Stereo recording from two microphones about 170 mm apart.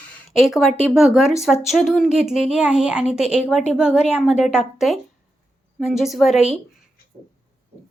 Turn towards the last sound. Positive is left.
turn(degrees=0)  # may be behind; listen again after turning